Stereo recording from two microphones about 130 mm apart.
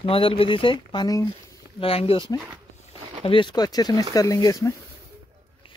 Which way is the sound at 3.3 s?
40° left (ahead or behind).